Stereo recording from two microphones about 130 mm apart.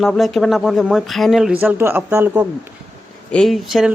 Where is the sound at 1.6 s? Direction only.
15° right (ahead or behind).